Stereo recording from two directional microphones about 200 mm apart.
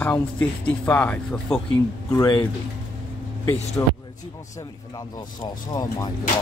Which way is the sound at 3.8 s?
15° left (ahead or behind).